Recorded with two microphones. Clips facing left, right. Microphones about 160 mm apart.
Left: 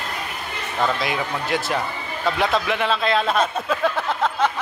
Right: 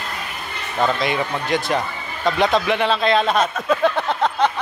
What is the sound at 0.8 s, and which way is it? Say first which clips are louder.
Speech: right 3 dB; 5° left (ahead or behind).